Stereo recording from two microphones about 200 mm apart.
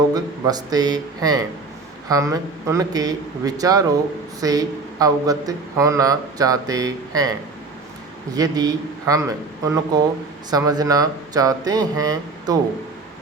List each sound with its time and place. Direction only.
0.1 s a man's voice: 20° right (ahead or behind)